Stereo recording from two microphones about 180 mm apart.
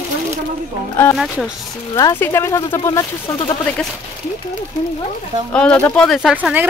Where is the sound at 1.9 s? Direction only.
15° left (ahead or behind).